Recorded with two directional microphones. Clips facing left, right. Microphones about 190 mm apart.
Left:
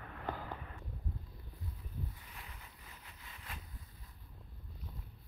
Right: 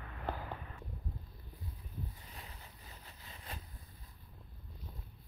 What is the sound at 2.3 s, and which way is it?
Vehicle, 35° right (ahead or behind).